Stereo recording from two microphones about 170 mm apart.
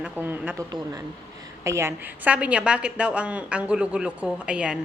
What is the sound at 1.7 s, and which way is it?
A woman's voice, 15° right (ahead or behind).